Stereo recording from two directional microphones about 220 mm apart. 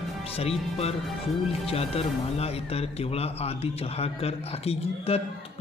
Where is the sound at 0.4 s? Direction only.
25° left (ahead or behind).